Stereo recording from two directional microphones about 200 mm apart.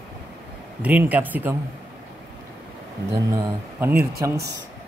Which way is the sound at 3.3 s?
15° right (ahead or behind).